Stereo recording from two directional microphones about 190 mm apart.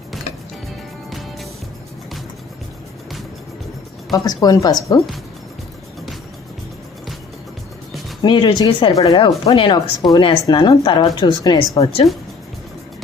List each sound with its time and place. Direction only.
4.1 s a woman's voice: 20° left (ahead or behind)
8.2 s a woman's voice: 25° left (ahead or behind)